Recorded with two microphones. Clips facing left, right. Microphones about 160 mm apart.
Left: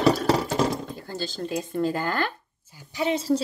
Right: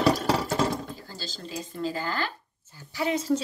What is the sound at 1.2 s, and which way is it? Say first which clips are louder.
Speech: left 9 dB; 55° left (ahead or behind).